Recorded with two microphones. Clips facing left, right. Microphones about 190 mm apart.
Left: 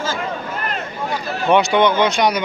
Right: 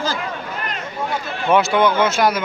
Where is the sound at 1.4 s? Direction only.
Centre (ahead or behind).